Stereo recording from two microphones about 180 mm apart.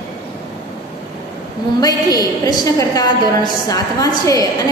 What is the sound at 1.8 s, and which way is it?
A woman's voice, 20° left (ahead or behind).